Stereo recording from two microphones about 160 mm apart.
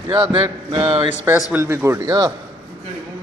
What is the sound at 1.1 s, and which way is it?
Speech, 10° right (ahead or behind).